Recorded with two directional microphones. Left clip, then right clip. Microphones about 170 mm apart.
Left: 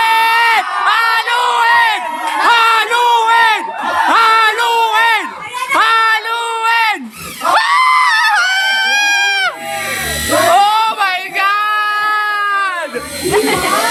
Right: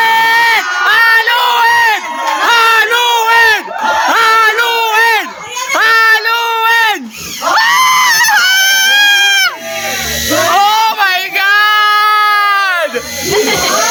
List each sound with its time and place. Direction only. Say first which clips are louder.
0.0 s crowd: right 2 dB; centre (ahead or behind)
4.1 s a sound: even; 10° right (ahead or behind)
7.5 s crowd: right 2 dB; 5° right (ahead or behind)
10.5 s child singing: right 2 dB; 5° right (ahead or behind); by 12.8 s 30° right (ahead or behind)